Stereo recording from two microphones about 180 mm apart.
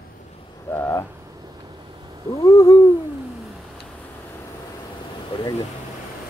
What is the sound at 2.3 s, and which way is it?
Speech, 20° left (ahead or behind).